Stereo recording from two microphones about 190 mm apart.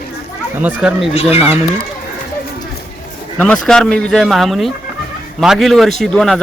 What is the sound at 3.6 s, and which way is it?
Speech, 5° left (ahead or behind).